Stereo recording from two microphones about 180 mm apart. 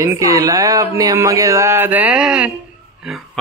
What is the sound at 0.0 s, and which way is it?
Speech, 15° right (ahead or behind).